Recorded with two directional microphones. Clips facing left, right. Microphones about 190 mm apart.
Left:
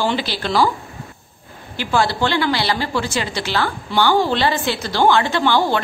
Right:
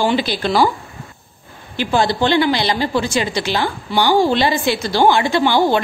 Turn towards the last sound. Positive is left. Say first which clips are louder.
# right 3 dB
turn(degrees=-15)  # may be behind; listen again after turning